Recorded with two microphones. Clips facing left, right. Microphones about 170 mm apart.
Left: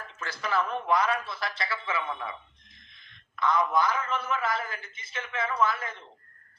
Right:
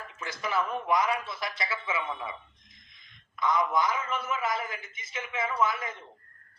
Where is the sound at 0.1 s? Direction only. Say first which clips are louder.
Left 1 dB; 15° right (ahead or behind).